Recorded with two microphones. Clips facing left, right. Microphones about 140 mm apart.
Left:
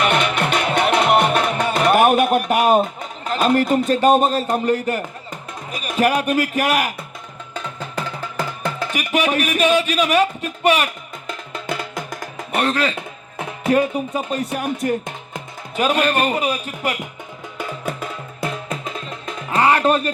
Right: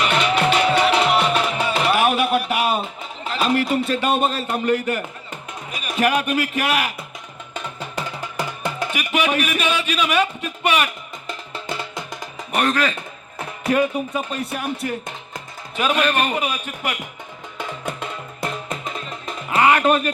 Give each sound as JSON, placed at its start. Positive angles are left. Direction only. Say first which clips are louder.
{"t": 0.0, "sound": "music", "louder": "even", "side_deg": 55}
{"t": 1.6, "sound": "a sound", "louder": "left 5 dB", "side_deg": 50}
{"t": 3.8, "sound": "speech", "louder": "left 5 dB", "side_deg": 40}
{"t": 7.8, "sound": "music", "louder": "left 2 dB", "side_deg": -10}
{"t": 8.9, "sound": "speech", "louder": "left 2 dB", "side_deg": 40}
{"t": 12.5, "sound": "speech", "louder": "even", "side_deg": 30}
{"t": 17.6, "sound": "music", "louder": "left 2 dB", "side_deg": 5}
{"t": 19.5, "sound": "speech", "louder": "even", "side_deg": 35}